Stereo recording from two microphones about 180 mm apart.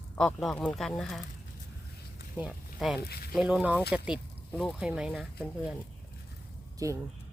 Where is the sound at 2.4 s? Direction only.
5° right (ahead or behind).